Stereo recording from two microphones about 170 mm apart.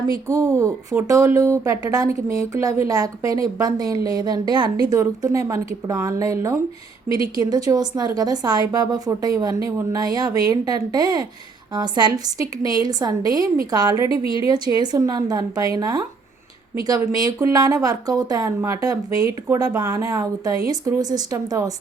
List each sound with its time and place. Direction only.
0.3 s a woman's voice: 15° right (ahead or behind)